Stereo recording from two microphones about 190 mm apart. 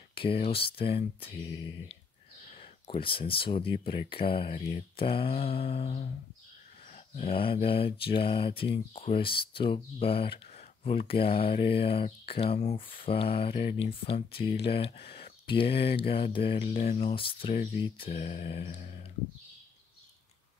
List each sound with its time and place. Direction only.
0.1 s mantra: 30° left (ahead or behind)
14.7 s speech: 30° left (ahead or behind)
16.1 s mantra: 30° left (ahead or behind)
17.7 s speech: 25° left (ahead or behind)